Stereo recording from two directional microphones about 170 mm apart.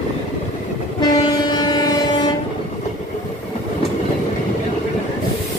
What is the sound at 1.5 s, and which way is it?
Train, 25° left (ahead or behind).